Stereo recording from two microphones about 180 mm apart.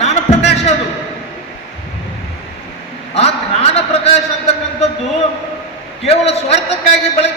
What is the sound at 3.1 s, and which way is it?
A man's voice, 35° left (ahead or behind).